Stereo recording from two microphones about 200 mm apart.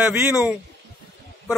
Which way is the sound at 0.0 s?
10° right (ahead or behind).